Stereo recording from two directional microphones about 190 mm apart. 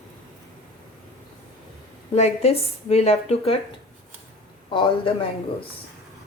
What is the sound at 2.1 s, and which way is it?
Speech, 35° left (ahead or behind).